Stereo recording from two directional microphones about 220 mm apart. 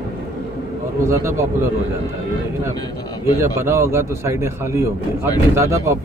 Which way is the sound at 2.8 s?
20° left (ahead or behind).